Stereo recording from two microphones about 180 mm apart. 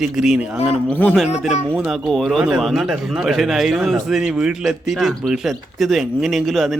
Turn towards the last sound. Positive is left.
turn(degrees=0)  # may be behind; listen again after turning